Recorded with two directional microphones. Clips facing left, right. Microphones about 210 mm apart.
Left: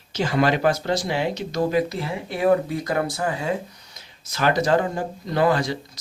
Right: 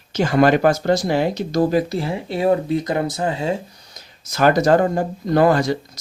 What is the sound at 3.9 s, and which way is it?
Speech, 45° right (ahead or behind).